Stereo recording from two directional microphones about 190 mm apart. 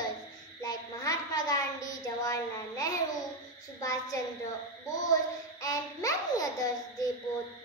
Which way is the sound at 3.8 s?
20° left (ahead or behind).